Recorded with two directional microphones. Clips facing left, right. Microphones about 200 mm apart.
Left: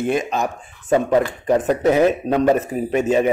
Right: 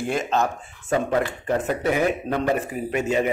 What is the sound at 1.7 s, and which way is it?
Speech, 40° left (ahead or behind).